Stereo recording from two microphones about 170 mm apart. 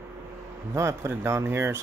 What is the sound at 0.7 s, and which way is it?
Speech, 15° right (ahead or behind).